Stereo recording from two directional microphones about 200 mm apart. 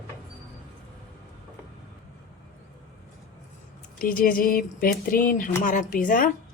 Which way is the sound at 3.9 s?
45° left (ahead or behind).